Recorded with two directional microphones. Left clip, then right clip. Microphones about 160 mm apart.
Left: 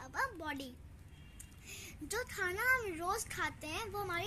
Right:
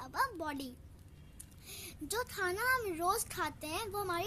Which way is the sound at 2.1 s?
45° right (ahead or behind).